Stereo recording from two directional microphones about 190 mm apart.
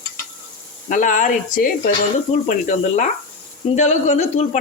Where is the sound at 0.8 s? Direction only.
40° left (ahead or behind).